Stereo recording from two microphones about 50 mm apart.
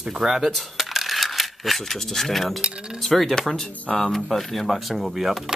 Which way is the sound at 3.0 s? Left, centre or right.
Centre.